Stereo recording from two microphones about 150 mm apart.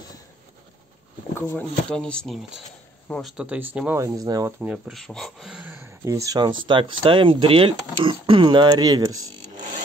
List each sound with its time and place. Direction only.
1.3 s speech: 15° left (ahead or behind); by 4.0 s 10° right (ahead or behind)
4.0 s speech: 25° right (ahead or behind)
4.6 s speech: 5° right (ahead or behind)
5.0 s speech: 5° left (ahead or behind); by 9.3 s 25° right (ahead or behind)